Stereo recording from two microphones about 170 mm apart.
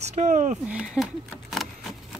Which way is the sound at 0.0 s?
40° right (ahead or behind).